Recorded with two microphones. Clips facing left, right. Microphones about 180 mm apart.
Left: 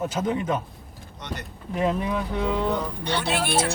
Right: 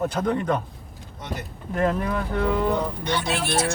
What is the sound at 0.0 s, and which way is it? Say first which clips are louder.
Speech: right 2 dB; 5° left (ahead or behind).